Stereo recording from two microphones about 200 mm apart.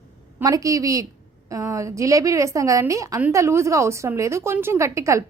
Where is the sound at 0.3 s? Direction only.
15° right (ahead or behind).